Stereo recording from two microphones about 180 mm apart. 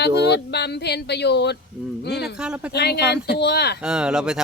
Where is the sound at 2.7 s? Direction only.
65° left (ahead or behind).